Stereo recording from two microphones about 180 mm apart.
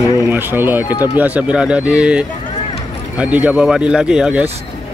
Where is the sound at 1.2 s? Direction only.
5° right (ahead or behind).